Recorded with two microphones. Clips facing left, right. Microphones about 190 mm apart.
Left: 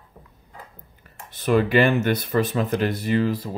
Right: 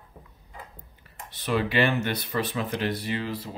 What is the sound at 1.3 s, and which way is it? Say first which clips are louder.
Speech: left 7 dB; 50° left (ahead or behind).